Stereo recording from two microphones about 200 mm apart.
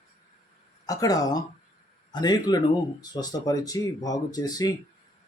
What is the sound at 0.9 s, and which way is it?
Speech, 15° left (ahead or behind).